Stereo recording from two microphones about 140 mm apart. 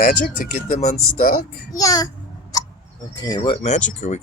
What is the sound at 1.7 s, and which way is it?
Speech, 25° left (ahead or behind).